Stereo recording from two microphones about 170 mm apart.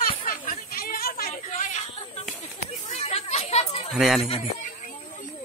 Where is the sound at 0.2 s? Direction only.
55° left (ahead or behind).